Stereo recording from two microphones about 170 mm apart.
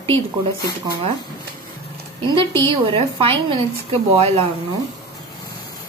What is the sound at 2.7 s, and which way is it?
A woman's voice, 30° right (ahead or behind).